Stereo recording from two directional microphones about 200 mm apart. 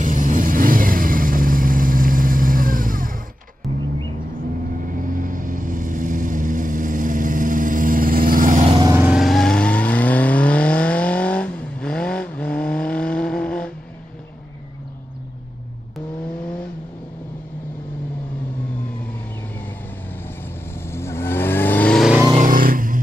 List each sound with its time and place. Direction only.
0.0 s vehicle: 40° right (ahead or behind)
5.0 s vehicle: 45° right (ahead or behind)
8.6 s vehicle: 25° right (ahead or behind)
8.9 s vehicle: 5° right (ahead or behind)
20.9 s vehicle: 15° left (ahead or behind)
22.4 s vehicle: 45° right (ahead or behind)